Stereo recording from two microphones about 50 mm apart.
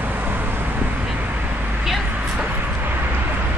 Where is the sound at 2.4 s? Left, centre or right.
Right.